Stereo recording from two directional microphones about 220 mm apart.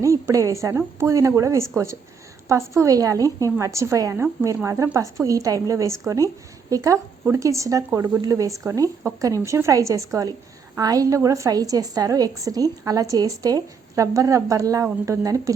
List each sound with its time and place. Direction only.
0.0 s a woman's voice: 15° right (ahead or behind)